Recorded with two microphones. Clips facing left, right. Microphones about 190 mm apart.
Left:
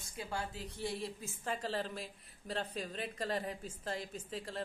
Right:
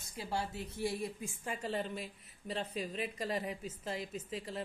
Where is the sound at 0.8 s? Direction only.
25° left (ahead or behind).